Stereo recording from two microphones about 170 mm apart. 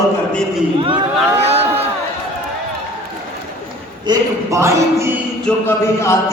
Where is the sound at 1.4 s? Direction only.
40° right (ahead or behind).